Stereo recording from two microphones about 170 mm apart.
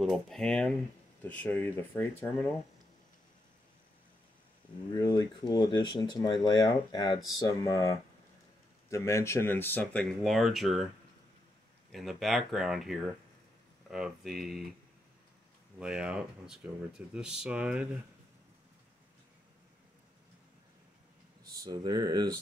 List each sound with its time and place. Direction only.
0.0 s speech: centre (ahead or behind)
4.9 s speech: 25° left (ahead or behind); by 10.9 s centre (ahead or behind)
11.9 s speech: centre (ahead or behind)
15.8 s speech: 5° right (ahead or behind)
21.6 s speech: 25° right (ahead or behind)